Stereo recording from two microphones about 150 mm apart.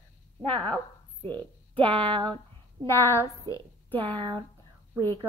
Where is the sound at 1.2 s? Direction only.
35° right (ahead or behind).